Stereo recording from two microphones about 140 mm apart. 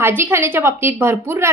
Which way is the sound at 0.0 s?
15° right (ahead or behind).